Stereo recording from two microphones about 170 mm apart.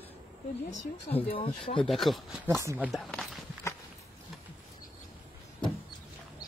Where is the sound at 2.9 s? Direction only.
Centre (ahead or behind).